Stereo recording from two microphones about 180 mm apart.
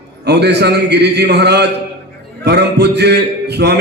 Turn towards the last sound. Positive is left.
turn(degrees=-65)  # may be behind; listen again after turning